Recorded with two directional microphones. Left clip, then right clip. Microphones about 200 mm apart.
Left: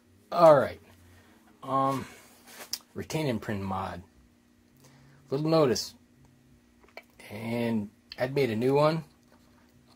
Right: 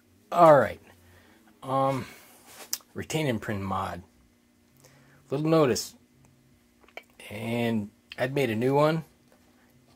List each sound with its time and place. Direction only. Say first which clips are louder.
0.3 s speech: right 2 dB; 30° right (ahead or behind)
1.6 s speech: right 1 dB; 45° right (ahead or behind)
2.7 s speech: right 2 dB; 30° right (ahead or behind)
5.3 s speech: right 1 dB; 25° right (ahead or behind)
6.9 s speech: right 3 dB; 30° right (ahead or behind)